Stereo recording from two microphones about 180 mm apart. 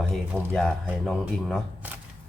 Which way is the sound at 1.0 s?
5° left (ahead or behind).